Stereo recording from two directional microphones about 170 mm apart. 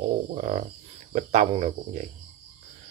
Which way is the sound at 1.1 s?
40° right (ahead or behind).